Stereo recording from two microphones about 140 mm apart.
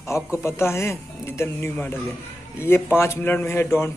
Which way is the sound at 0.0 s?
20° left (ahead or behind).